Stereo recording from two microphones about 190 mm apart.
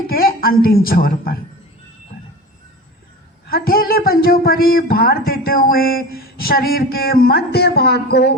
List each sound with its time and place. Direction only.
0.1 s a woman's voice: 50° left (ahead or behind)
3.5 s speech: 50° left (ahead or behind)